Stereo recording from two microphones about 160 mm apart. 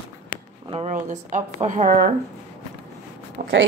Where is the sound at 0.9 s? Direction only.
50° right (ahead or behind).